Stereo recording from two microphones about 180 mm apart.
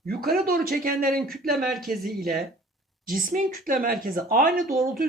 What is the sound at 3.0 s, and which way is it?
Speech, 50° right (ahead or behind).